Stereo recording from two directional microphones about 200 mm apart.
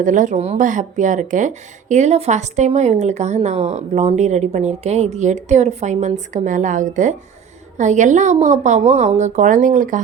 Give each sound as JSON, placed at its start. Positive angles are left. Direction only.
{"t": 0.0, "sound": "speech", "side_deg": -40}